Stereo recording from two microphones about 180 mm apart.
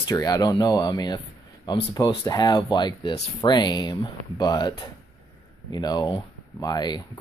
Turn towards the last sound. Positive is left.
turn(degrees=20)  # may be behind; listen again after turning